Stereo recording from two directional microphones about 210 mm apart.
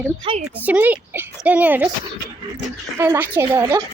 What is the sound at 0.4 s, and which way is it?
A woman's voice, 5° right (ahead or behind).